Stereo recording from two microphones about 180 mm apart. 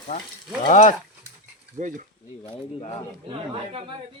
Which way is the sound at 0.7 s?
45° left (ahead or behind).